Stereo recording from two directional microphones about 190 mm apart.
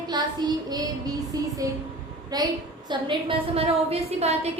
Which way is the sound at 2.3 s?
20° right (ahead or behind).